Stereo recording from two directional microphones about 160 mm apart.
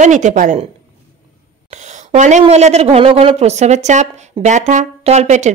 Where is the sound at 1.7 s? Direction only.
50° right (ahead or behind).